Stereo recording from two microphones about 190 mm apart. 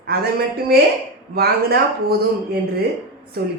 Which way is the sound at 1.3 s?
55° right (ahead or behind).